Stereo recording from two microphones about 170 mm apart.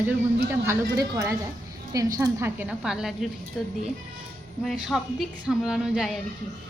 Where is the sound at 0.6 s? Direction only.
15° right (ahead or behind).